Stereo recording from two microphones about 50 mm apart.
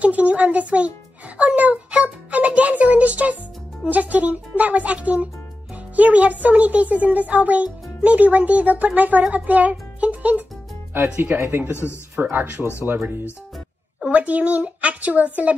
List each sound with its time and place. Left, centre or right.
0.0 s a child's voice: right
11.3 s speech: right
12.2 s a child's voice: right
14.1 s a child's voice: right